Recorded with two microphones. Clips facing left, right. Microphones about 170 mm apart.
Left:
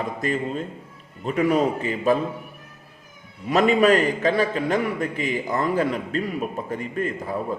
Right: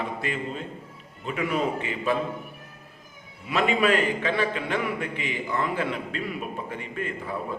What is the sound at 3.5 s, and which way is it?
A man's voice, 40° left (ahead or behind).